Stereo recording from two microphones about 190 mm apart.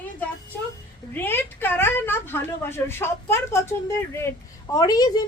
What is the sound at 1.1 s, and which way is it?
A woman's voice, 10° left (ahead or behind).